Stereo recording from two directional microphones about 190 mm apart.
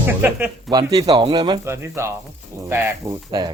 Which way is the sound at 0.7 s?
20° right (ahead or behind).